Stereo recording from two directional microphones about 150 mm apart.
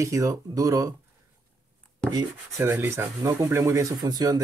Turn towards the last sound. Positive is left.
turn(degrees=-25)  # may be behind; listen again after turning